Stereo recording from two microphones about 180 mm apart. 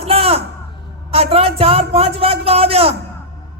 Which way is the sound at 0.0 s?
35° right (ahead or behind).